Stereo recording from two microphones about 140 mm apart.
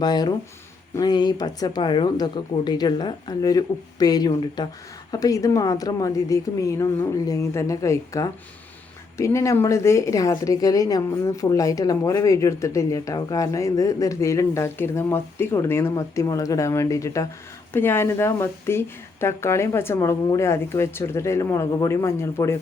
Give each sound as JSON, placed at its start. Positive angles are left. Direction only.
{"t": 0.0, "sound": "a woman's voice", "side_deg": 30}